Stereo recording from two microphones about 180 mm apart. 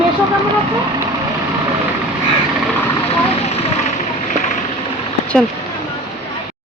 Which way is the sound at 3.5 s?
35° left (ahead or behind).